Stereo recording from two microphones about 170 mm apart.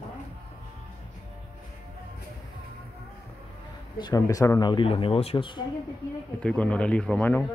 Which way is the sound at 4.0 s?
20° left (ahead or behind).